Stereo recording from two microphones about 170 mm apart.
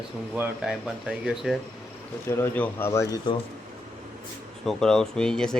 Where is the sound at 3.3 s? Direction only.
30° left (ahead or behind).